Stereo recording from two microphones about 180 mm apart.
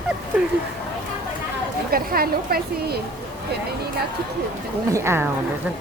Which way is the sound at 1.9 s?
55° right (ahead or behind).